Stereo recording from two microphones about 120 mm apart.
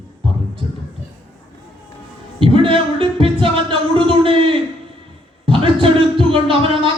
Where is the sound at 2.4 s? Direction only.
50° right (ahead or behind).